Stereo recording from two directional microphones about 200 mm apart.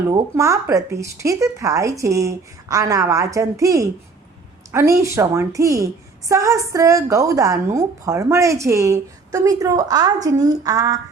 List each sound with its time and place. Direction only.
0.1 s a woman's voice: 15° right (ahead or behind)